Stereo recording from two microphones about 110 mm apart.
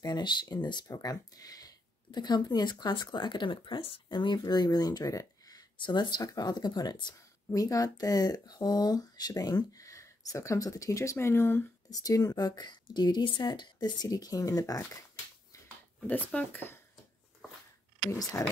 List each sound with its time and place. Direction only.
0.0 s speech: 45° left (ahead or behind); by 11.6 s 20° left (ahead or behind)
11.9 s speech: 30° left (ahead or behind)
16.1 s speech: 10° left (ahead or behind)
18.1 s speech: 30° left (ahead or behind)